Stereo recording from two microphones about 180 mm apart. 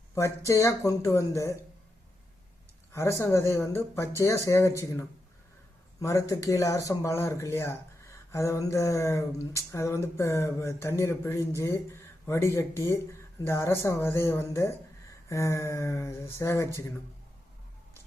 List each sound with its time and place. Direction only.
0.1 s speech: 15° left (ahead or behind)
2.9 s speech: 15° left (ahead or behind)